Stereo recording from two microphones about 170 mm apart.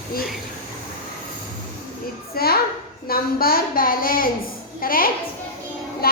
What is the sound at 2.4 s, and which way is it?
A woman's voice, 60° left (ahead or behind).